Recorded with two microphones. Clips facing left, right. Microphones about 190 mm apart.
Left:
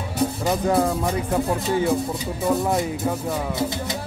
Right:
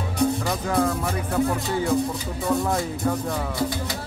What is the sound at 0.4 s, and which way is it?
Speech, 20° left (ahead or behind).